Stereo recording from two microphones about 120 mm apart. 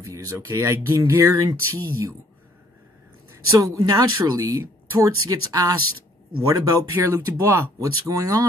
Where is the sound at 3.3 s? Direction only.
25° right (ahead or behind).